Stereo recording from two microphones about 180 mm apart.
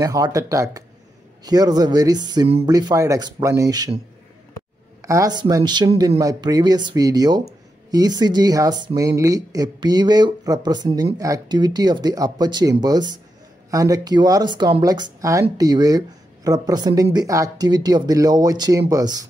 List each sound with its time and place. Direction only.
0.0 s speech: 20° right (ahead or behind)
5.0 s speech: 20° right (ahead or behind)